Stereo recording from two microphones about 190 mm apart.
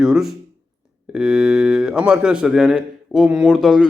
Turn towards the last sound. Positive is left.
turn(degrees=0)  # may be behind; listen again after turning